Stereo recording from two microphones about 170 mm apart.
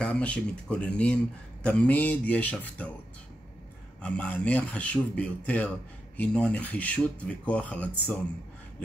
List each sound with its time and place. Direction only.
0.0 s speech: 5° left (ahead or behind)
4.0 s speech: 5° left (ahead or behind)